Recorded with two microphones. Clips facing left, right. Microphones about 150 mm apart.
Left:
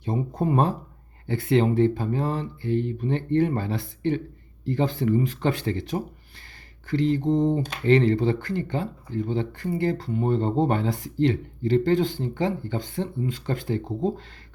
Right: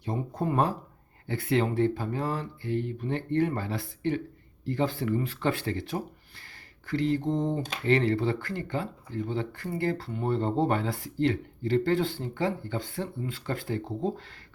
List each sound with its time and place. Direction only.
0.0 s speech: 25° left (ahead or behind)